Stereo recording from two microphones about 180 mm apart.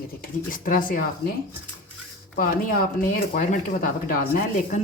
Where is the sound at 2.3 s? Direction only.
55° left (ahead or behind).